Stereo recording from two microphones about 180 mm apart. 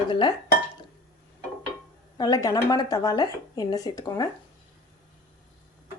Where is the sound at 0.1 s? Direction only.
25° left (ahead or behind).